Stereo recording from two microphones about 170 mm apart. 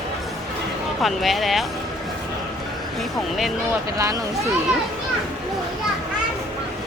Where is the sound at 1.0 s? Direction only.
Centre (ahead or behind).